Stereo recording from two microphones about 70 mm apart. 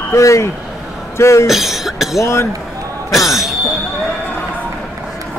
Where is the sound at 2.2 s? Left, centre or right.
Left.